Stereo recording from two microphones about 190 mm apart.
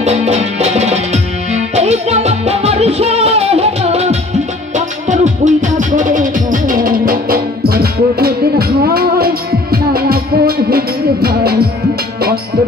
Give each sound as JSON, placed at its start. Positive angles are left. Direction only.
{"t": 0.0, "sound": "music", "side_deg": -35}